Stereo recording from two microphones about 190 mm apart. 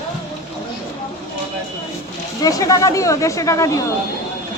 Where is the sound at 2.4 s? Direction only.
20° left (ahead or behind).